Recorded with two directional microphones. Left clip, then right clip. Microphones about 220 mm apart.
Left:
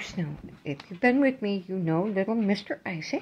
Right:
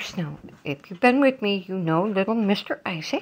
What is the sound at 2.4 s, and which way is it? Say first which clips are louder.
Speech: right 5 dB; 5° right (ahead or behind).